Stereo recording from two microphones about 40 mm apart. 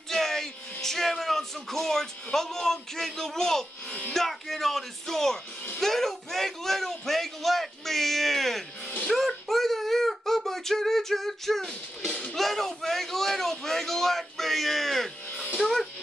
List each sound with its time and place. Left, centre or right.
0.1 s music: centre
2.3 s a man's voice: centre
9.1 s a sound: centre
12.1 s music: left
12.4 s a man's voice: centre
15.2 s music: left
15.6 s speech: centre